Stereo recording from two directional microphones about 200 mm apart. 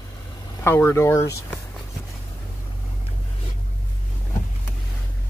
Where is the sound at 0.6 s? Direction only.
10° left (ahead or behind).